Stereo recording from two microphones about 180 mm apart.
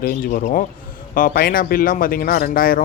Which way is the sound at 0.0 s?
50° left (ahead or behind).